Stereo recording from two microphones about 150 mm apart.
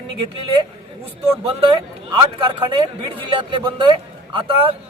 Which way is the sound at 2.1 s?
30° right (ahead or behind).